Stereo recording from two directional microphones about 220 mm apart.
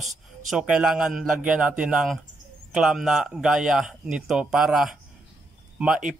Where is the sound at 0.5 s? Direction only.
5° right (ahead or behind).